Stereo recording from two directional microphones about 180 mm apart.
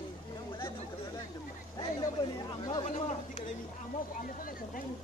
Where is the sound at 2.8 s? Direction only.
40° left (ahead or behind).